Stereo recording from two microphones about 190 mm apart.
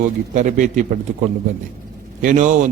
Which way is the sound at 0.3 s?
40° right (ahead or behind).